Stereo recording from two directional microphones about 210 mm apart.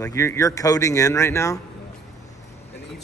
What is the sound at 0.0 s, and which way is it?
Speech, 15° left (ahead or behind).